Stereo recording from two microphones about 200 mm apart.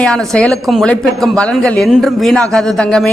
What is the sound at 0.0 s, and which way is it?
A woman's voice, 5° left (ahead or behind).